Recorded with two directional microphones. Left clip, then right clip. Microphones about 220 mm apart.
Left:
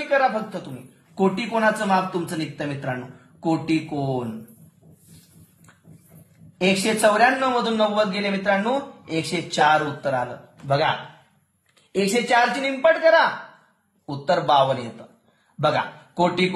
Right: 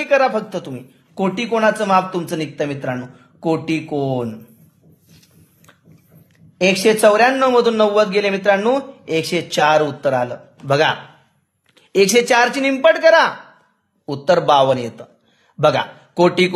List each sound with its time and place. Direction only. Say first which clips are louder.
0.1 s a woman's voice: right 5 dB; 55° right (ahead or behind)
6.6 s a man's voice: right 6 dB; 50° right (ahead or behind)
11.9 s a man's voice: right 7 dB; 50° right (ahead or behind)
15.6 s speech: right 6 dB; 55° right (ahead or behind)